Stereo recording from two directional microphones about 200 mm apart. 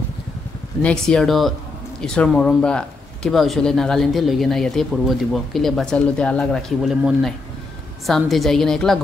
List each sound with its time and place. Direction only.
0.8 s speech: 5° left (ahead or behind)